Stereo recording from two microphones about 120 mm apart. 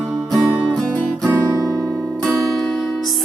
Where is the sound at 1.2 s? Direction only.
30° right (ahead or behind).